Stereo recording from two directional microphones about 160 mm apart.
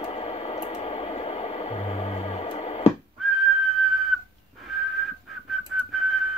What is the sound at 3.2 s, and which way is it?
Whistling, centre (ahead or behind).